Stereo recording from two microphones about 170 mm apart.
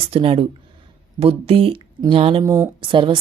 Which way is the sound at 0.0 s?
30° right (ahead or behind).